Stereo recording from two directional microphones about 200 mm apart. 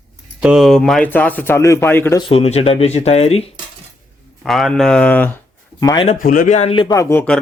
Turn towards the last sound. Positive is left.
turn(degrees=5)  # may be behind; listen again after turning